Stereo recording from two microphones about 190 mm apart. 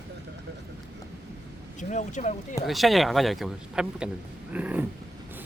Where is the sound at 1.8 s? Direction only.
40° left (ahead or behind).